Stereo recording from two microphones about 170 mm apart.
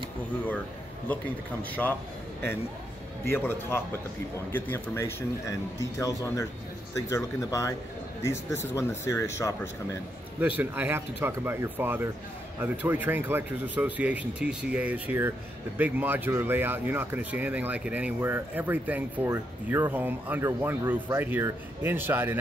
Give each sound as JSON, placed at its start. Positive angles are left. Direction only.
{"t": 1.0, "sound": "speech", "side_deg": 10}
{"t": 3.3, "sound": "speech", "side_deg": 15}
{"t": 10.4, "sound": "speech", "side_deg": -10}